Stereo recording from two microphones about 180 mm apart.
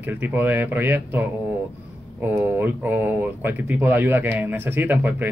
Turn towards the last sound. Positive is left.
turn(degrees=-10)  # may be behind; listen again after turning